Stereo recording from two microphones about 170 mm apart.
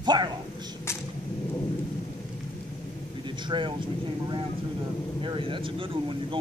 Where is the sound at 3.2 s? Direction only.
30° right (ahead or behind).